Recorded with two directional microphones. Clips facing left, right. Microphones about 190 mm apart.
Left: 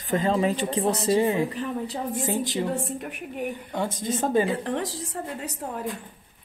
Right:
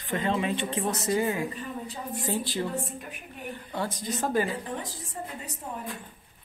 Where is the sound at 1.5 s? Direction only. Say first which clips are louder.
Left 7 dB; 85° left.